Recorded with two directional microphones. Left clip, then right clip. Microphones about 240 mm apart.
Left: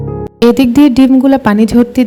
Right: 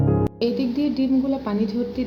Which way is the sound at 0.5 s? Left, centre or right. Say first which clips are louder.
Left 16 dB; left.